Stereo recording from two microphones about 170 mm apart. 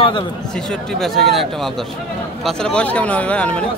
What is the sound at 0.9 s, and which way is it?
Speech, centre (ahead or behind).